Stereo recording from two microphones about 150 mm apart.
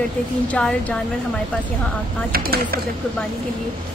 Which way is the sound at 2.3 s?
85° right.